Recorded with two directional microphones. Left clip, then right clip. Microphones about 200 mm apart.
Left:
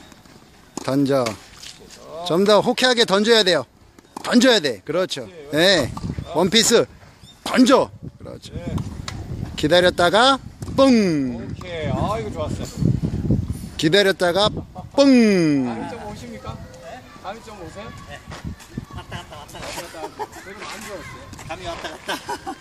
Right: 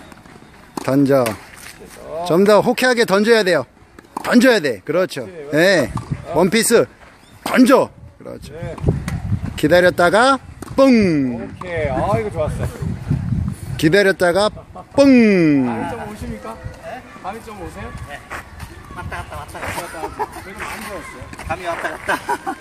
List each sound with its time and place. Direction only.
0.8 s speech: centre (ahead or behind)
7.4 s a sound: centre (ahead or behind)
9.6 s speech: centre (ahead or behind)
11.7 s speech: 40° right (ahead or behind)
13.7 s speech: centre (ahead or behind)
18.9 s a sound: 10° left (ahead or behind)